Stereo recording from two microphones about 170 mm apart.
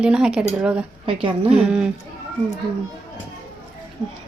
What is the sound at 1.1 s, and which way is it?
Speech, 30° right (ahead or behind).